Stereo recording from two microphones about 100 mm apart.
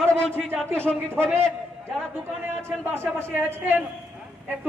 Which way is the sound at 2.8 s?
25° right (ahead or behind).